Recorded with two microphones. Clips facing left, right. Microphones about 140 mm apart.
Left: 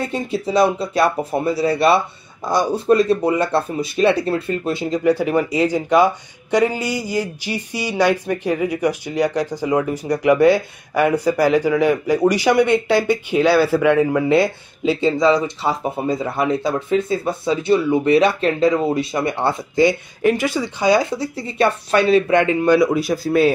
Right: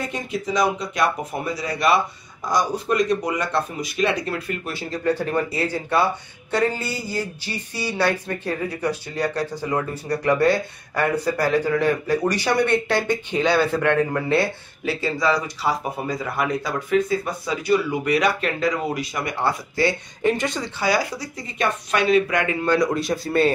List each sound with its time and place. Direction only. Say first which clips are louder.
0.1 s speech: left 5 dB; 30° left (ahead or behind)
20.2 s speech: left 3 dB; 5° left (ahead or behind)
20.8 s speech: left 6 dB; 25° left (ahead or behind)
22.9 s speech: left 4 dB; 5° left (ahead or behind)